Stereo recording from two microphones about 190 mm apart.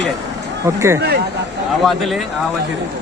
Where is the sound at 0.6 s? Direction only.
15° right (ahead or behind).